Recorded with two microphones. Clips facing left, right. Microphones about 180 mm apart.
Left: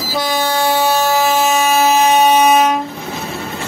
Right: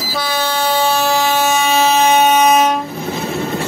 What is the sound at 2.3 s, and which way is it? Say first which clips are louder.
Train: left 1 dB; 5° left (ahead or behind).